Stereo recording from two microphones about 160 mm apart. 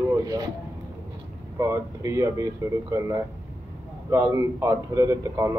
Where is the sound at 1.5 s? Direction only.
20° right (ahead or behind).